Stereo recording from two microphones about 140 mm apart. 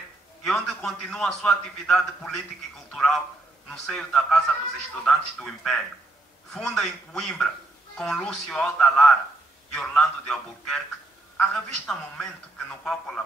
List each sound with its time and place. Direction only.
0.5 s a man's voice: 5° left (ahead or behind)